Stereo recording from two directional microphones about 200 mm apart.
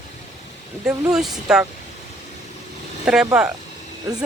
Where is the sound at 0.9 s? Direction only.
5° right (ahead or behind).